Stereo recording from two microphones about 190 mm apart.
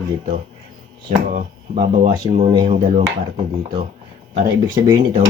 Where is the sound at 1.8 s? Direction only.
35° right (ahead or behind).